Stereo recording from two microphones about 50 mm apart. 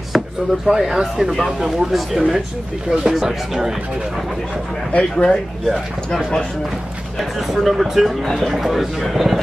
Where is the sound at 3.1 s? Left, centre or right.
Centre.